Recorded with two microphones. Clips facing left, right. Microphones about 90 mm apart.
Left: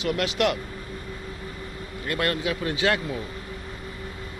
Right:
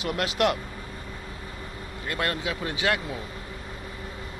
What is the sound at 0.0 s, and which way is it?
Speech, 35° right (ahead or behind).